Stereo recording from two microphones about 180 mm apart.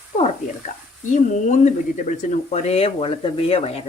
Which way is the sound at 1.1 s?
40° left (ahead or behind).